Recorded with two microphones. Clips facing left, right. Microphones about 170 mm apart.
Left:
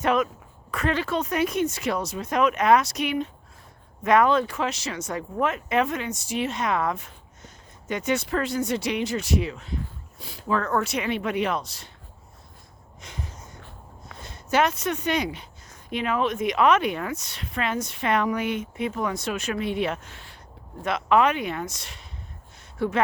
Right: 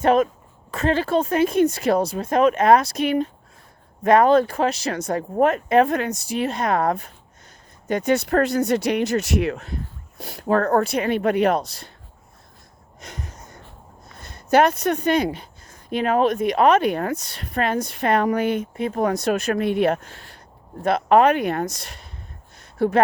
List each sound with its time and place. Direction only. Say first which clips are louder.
0.0 s speech: right 6 dB; 30° right (ahead or behind); by 6.1 s 55° right (ahead or behind)
6.2 s speech: right 4 dB; 35° right (ahead or behind)
8.2 s speech: right 6 dB; 60° right (ahead or behind)
10.4 s speech: right 6 dB; 50° right (ahead or behind)
10.7 s speech: right 6 dB; 35° right (ahead or behind)
14.2 s a sound: right 6 dB; 60° right (ahead or behind)
14.8 s speech: right 6 dB; 55° right (ahead or behind); by 22.9 s 40° right (ahead or behind)